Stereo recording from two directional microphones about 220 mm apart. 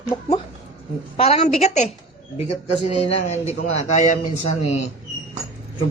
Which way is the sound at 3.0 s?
30° left (ahead or behind).